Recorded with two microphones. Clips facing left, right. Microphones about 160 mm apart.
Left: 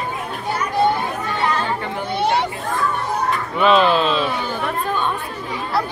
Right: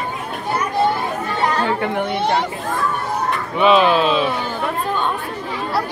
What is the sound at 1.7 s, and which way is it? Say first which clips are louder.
Speech: right 5 dB; 60° right (ahead or behind).